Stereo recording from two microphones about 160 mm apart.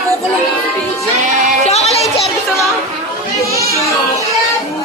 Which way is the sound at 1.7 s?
40° left (ahead or behind).